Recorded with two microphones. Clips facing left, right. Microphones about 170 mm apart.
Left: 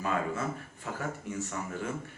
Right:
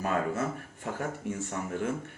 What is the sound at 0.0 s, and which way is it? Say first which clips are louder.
A man's voice: right 2 dB; 50° right (ahead or behind).